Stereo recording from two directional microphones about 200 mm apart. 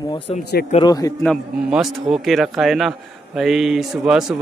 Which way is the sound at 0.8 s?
20° left (ahead or behind).